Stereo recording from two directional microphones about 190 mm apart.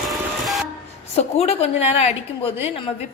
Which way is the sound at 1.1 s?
35° left (ahead or behind).